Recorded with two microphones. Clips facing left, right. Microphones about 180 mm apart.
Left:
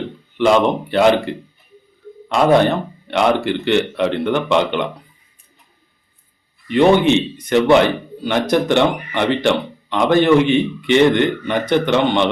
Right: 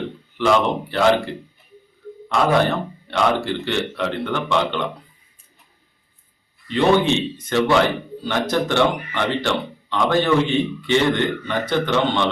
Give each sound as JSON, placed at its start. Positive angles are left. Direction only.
{"t": 0.3, "sound": "speech", "side_deg": 20}
{"t": 7.0, "sound": "speech", "side_deg": 20}